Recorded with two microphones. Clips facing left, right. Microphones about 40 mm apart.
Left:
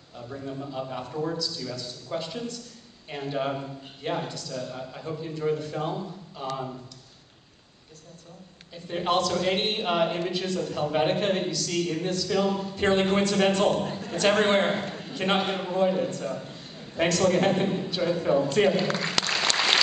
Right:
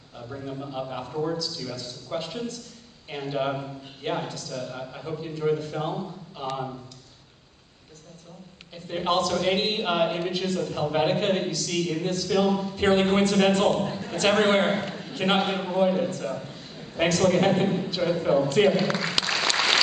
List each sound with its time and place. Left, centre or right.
0.2 s a man's voice: centre
0.8 s a man's voice: centre
1.3 s a man's voice: centre
3.1 s a man's voice: centre
4.3 s a man's voice: centre
4.6 s a man's voice: centre
8.7 s a man's voice: centre
13.7 s a sound: centre
14.3 s a man's voice: centre
16.2 s a sound: centre
17.2 s a man's voice: centre
19.2 s applause: centre